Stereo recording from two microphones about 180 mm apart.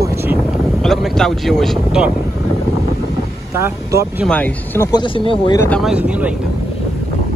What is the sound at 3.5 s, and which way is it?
Speech, 15° right (ahead or behind).